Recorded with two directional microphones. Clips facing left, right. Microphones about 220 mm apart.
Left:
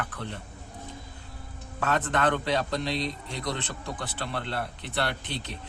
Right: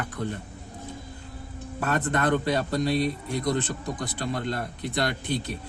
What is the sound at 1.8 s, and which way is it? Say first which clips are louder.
Speech: right 1 dB; 10° right (ahead or behind).